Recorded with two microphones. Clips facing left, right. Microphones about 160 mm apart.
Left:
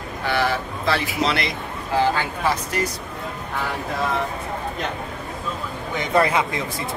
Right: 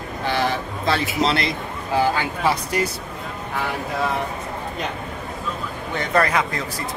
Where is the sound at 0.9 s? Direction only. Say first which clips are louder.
Right 1 dB; 30° right (ahead or behind).